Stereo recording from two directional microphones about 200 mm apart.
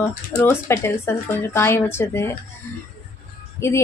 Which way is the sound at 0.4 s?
10° left (ahead or behind).